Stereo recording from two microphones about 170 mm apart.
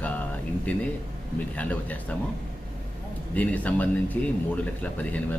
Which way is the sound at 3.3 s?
10° left (ahead or behind).